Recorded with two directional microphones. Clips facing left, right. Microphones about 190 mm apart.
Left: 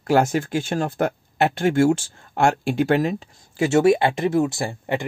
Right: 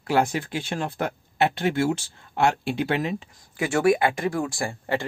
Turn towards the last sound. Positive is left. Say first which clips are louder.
# left 2 dB
turn(degrees=20)  # may be behind; listen again after turning